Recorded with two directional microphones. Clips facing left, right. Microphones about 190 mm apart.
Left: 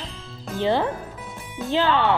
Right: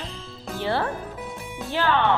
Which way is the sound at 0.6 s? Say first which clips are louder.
Left 4 dB; 20° left (ahead or behind).